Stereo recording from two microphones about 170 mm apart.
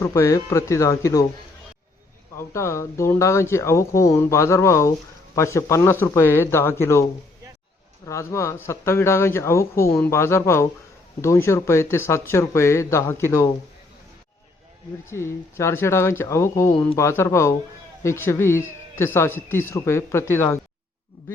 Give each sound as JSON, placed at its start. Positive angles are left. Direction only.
{"t": 0.0, "sound": "speech", "side_deg": 20}
{"t": 2.4, "sound": "speech", "side_deg": 15}
{"t": 15.1, "sound": "speech", "side_deg": 15}